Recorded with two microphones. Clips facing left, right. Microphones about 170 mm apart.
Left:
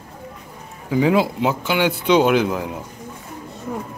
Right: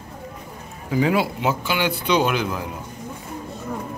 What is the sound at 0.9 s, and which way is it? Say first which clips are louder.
Speech: left 3 dB; 20° left (ahead or behind).